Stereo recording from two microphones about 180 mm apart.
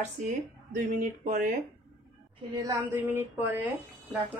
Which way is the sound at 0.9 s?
45° right (ahead or behind).